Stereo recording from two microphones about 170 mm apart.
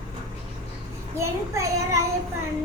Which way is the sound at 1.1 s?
15° right (ahead or behind).